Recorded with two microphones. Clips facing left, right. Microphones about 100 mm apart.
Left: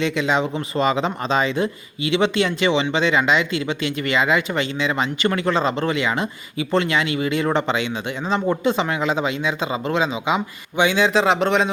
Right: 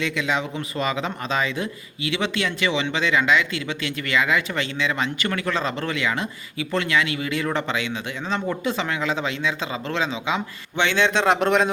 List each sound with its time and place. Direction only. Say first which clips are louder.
0.0 s speech: left 4 dB; 25° left (ahead or behind); by 11.7 s centre (ahead or behind)